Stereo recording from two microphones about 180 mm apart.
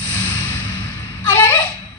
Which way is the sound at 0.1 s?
10° left (ahead or behind).